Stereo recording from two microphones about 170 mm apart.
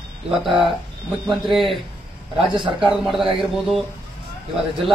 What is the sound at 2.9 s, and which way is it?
Speech, centre (ahead or behind).